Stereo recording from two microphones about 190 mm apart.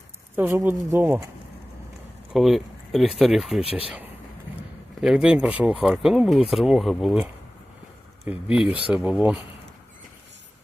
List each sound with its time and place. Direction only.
0.3 s speech: 10° right (ahead or behind)
2.3 s speech: centre (ahead or behind)
3.6 s speech: 30° left (ahead or behind)
4.9 s speech: 5° right (ahead or behind)